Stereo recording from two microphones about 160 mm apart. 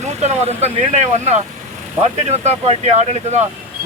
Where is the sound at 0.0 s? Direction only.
45° right (ahead or behind).